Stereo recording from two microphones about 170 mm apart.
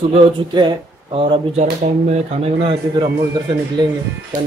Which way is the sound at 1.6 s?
40° right (ahead or behind).